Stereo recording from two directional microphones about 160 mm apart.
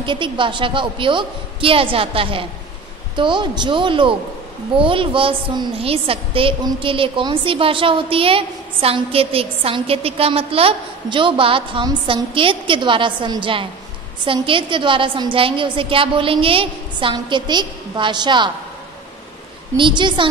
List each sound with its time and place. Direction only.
0.0 s a woman's voice: 30° right (ahead or behind)
19.8 s a woman's voice: 30° right (ahead or behind)